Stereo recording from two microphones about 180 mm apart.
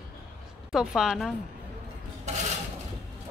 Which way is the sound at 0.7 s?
5° right (ahead or behind).